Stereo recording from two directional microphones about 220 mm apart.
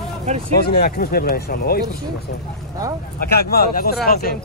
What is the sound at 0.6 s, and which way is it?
Speech, 45° left (ahead or behind).